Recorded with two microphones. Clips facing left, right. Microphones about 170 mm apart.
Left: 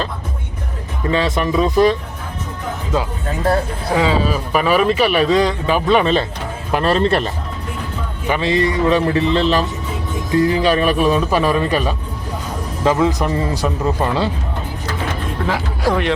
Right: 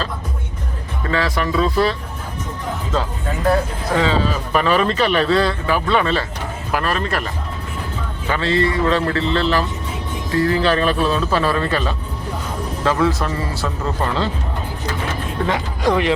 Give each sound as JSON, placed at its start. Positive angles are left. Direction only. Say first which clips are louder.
{"t": 1.0, "sound": "speech", "louder": "left 3 dB", "side_deg": 20}
{"t": 3.9, "sound": "speech", "louder": "left 2 dB", "side_deg": 10}
{"t": 8.3, "sound": "speech", "louder": "left 2 dB", "side_deg": 15}
{"t": 15.4, "sound": "speech", "louder": "even", "side_deg": 5}